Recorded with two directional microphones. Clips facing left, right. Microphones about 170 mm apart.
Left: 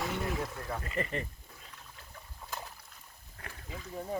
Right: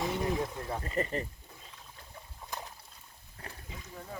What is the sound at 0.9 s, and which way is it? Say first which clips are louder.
Speech: right 3 dB; 35° right (ahead or behind).